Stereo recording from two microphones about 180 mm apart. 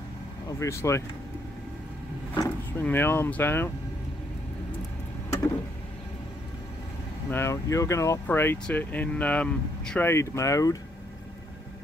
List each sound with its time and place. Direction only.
0.5 s speech: 15° left (ahead or behind)
2.3 s speech: 15° left (ahead or behind)
7.2 s speech: 15° left (ahead or behind)